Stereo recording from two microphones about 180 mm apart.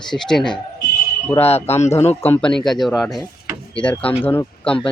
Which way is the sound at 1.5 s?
35° left (ahead or behind).